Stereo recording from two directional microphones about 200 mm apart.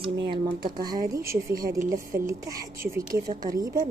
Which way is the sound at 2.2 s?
20° right (ahead or behind).